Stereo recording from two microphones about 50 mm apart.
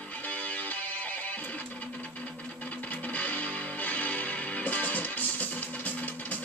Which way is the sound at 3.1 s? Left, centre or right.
Left.